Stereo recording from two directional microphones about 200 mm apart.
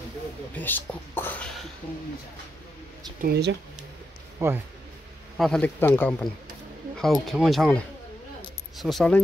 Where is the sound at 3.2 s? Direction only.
55° right (ahead or behind).